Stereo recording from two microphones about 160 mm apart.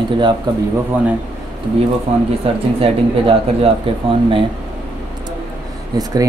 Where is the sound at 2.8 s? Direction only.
40° right (ahead or behind).